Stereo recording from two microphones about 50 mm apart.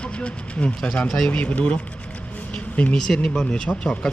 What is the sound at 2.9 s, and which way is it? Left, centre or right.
Speech, centre.